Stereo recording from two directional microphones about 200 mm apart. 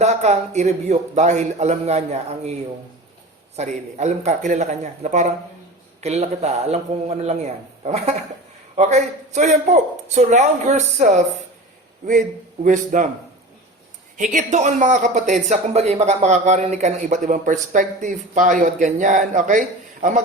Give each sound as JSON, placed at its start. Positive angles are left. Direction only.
{"t": 0.0, "sound": "speech", "side_deg": -35}
{"t": 12.6, "sound": "speech", "side_deg": -40}
{"t": 14.2, "sound": "speech", "side_deg": -35}